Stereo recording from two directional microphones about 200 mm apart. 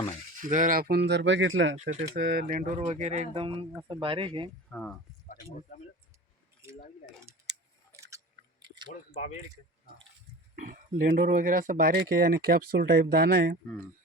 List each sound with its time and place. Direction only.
0.3 s speech: 40° right (ahead or behind); by 1.8 s 75° right (ahead or behind)
1.8 s speech: 40° right (ahead or behind)
2.1 s speech: 55° right (ahead or behind)
2.7 s speech: 30° right (ahead or behind)
4.7 s speech: 5° left (ahead or behind)
7.3 s a sound: 15° right (ahead or behind)
8.6 s chewing: 20° right (ahead or behind)
8.9 s speech: 35° left (ahead or behind)
10.5 s a sound: 45° right (ahead or behind)
11.2 s speech: 45° right (ahead or behind)